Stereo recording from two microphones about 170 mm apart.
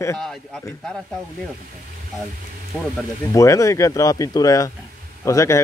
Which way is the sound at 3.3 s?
20° left (ahead or behind).